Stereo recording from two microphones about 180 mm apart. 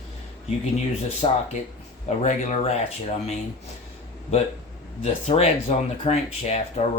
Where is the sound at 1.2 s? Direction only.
30° left (ahead or behind).